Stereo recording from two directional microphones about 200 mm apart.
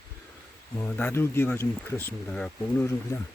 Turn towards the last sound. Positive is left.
turn(degrees=10)  # may be behind; listen again after turning